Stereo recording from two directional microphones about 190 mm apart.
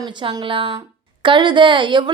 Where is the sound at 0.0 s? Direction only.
25° right (ahead or behind).